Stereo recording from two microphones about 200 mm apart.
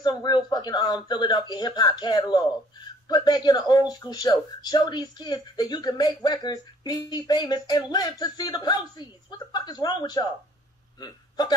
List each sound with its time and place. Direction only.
0.0 s a man's voice: 20° left (ahead or behind)